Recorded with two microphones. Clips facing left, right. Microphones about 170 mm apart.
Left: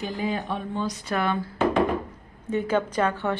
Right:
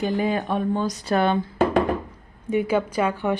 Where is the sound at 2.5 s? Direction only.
10° right (ahead or behind).